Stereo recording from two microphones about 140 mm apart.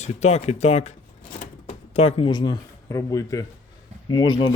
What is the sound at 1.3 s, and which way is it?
Cash register, 45° left (ahead or behind).